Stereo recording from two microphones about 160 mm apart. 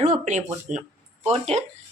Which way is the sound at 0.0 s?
50° right (ahead or behind).